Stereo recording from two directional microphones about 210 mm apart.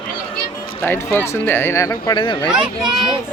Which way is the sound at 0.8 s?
10° left (ahead or behind).